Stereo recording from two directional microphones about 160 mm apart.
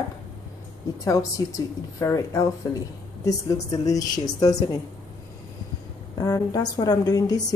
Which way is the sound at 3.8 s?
20° left (ahead or behind).